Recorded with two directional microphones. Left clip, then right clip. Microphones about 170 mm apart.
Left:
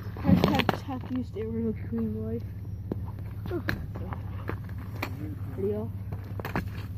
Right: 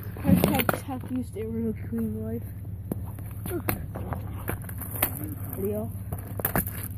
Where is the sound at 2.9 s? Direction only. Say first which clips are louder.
Right 1 dB; 25° right (ahead or behind).